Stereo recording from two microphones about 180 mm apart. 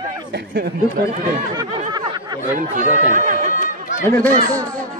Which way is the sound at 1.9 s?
25° right (ahead or behind).